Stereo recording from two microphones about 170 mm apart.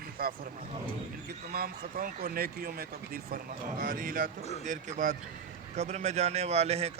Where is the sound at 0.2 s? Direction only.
60° right (ahead or behind).